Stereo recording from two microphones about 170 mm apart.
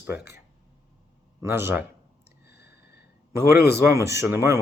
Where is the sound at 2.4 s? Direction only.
75° left (ahead or behind).